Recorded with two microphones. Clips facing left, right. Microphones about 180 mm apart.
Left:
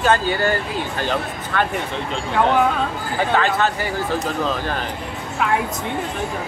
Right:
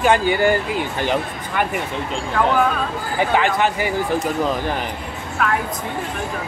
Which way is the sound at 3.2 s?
15° right (ahead or behind).